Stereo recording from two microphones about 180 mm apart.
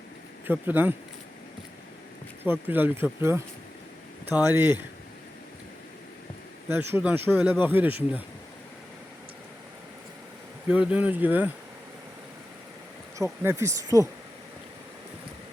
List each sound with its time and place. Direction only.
0.4 s speech: 10° right (ahead or behind)
2.4 s speech: 10° right (ahead or behind)
6.7 s speech: 10° right (ahead or behind)
10.7 s speech: 5° right (ahead or behind)
13.4 s speech: 15° right (ahead or behind)